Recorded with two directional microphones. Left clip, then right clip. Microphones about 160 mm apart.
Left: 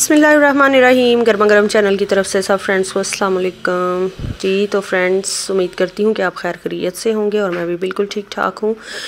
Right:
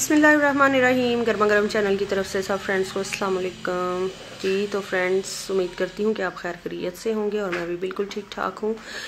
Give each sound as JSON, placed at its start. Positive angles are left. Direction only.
{"t": 0.0, "sound": "a woman's voice", "side_deg": 50}